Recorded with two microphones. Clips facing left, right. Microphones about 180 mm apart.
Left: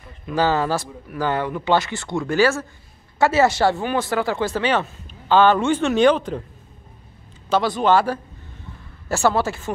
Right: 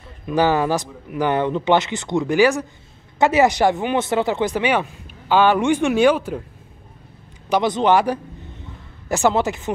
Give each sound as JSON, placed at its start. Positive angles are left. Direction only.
{"t": 0.3, "sound": "speech", "side_deg": -15}
{"t": 7.4, "sound": "speech", "side_deg": -20}